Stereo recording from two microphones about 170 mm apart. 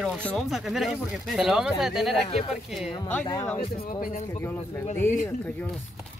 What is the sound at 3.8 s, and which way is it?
Speech, 55° left (ahead or behind).